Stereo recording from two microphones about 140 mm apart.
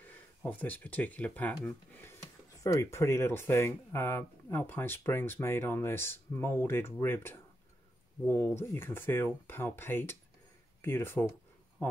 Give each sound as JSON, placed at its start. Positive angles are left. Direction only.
{"t": 0.0, "sound": "speech", "side_deg": 10}